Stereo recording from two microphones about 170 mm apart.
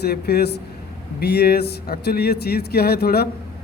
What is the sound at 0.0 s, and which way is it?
A man's voice, 70° left (ahead or behind).